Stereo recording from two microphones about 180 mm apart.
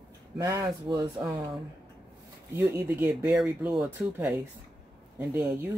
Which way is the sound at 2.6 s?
10° right (ahead or behind).